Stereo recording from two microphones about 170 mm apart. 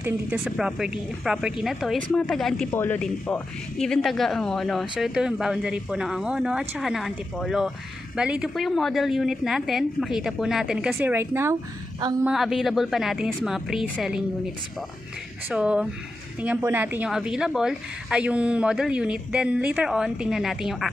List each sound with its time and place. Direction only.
0.6 s speech: 5° right (ahead or behind)
2.7 s a woman's voice: 10° left (ahead or behind); by 12.3 s 20° right (ahead or behind)
12.3 s speech: centre (ahead or behind)
15.5 s speech: 5° right (ahead or behind)